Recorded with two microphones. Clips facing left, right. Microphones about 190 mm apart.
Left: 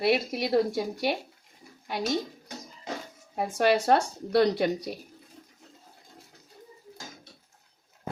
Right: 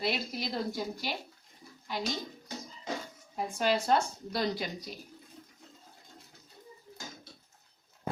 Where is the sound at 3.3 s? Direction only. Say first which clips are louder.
Left 6 dB; 65° left (ahead or behind).